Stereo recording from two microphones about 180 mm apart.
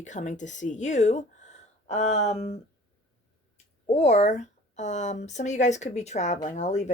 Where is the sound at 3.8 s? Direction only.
35° left (ahead or behind).